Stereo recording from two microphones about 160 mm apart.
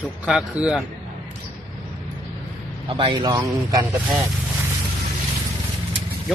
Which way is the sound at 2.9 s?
30° right (ahead or behind).